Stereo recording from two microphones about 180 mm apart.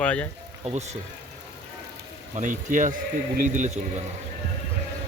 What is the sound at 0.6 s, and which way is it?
Speech, 35° right (ahead or behind).